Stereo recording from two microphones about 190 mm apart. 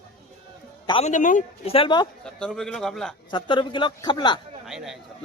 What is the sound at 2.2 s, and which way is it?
Speech, 5° left (ahead or behind).